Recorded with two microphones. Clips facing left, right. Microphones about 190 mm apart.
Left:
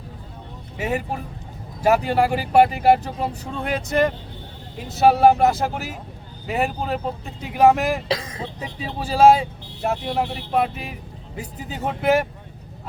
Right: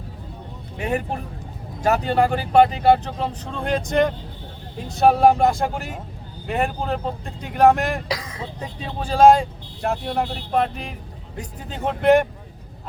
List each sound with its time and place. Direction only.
0.8 s speech: 5° left (ahead or behind)
8.0 s speech: 25° left (ahead or behind)
8.5 s speech: 5° left (ahead or behind)